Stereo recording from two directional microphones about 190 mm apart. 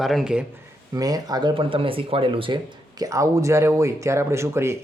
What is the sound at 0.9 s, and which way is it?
Speech, 20° right (ahead or behind).